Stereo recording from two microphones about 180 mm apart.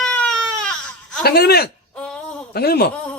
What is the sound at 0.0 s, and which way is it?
Baby cry, 5° left (ahead or behind).